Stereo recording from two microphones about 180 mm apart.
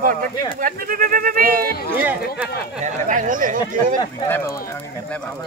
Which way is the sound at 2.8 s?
45° right (ahead or behind).